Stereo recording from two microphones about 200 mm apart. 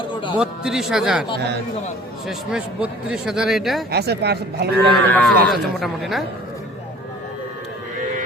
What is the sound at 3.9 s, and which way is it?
Speech, 55° right (ahead or behind).